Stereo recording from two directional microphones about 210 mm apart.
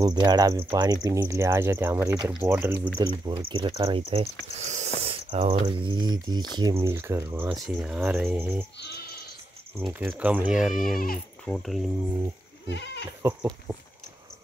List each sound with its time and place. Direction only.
0.0 s speech: 20° right (ahead or behind)
3.3 s speech: 25° right (ahead or behind)
8.7 s sheep: 55° left (ahead or behind)
9.8 s speech: 5° right (ahead or behind)
12.6 s speech: 55° left (ahead or behind)
13.2 s speech: 15° right (ahead or behind)